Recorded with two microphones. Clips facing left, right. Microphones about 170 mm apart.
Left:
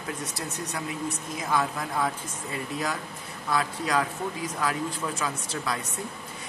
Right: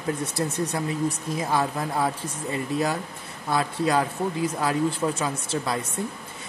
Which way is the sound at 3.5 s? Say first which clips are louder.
Right 4 dB; 30° right (ahead or behind).